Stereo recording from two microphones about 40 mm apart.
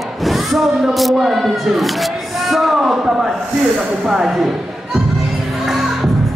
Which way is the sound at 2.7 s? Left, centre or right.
Centre.